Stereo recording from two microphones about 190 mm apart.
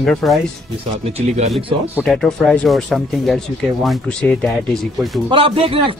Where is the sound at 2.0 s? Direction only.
Centre (ahead or behind).